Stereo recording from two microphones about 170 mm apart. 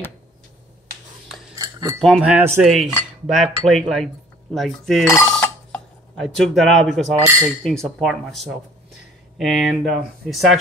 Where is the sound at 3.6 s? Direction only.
Centre (ahead or behind).